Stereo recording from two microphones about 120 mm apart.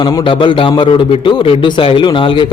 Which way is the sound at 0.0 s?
35° left (ahead or behind).